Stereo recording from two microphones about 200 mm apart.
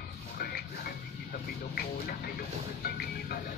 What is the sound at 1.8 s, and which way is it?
Music, 50° left (ahead or behind).